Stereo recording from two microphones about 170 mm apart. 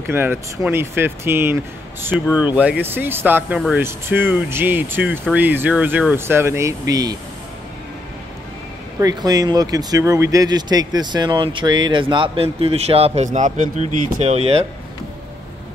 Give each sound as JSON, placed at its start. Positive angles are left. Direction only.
{"t": 0.0, "sound": "speech", "side_deg": -10}
{"t": 9.0, "sound": "speech", "side_deg": -25}